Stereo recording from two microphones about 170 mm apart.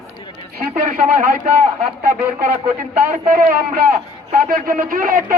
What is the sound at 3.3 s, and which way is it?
A man's voice, 55° right (ahead or behind).